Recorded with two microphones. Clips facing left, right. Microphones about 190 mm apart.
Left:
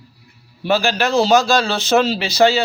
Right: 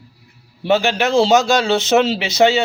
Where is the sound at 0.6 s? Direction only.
25° right (ahead or behind).